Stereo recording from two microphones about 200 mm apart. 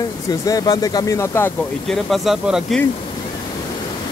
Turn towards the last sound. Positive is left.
turn(degrees=0)  # may be behind; listen again after turning